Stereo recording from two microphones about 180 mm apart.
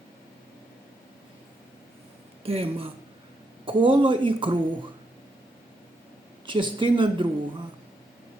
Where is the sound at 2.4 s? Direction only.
30° right (ahead or behind).